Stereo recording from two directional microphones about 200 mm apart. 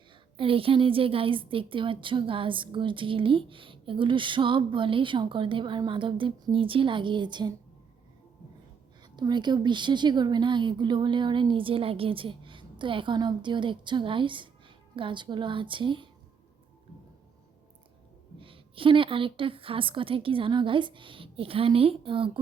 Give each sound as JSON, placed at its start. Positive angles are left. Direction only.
{"t": 0.3, "sound": "a woman's voice", "side_deg": -25}
{"t": 9.1, "sound": "a woman's voice", "side_deg": -20}
{"t": 18.3, "sound": "a woman's voice", "side_deg": -25}